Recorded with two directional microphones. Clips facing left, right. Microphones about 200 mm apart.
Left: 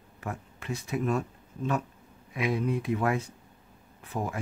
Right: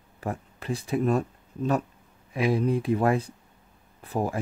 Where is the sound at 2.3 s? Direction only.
30° right (ahead or behind).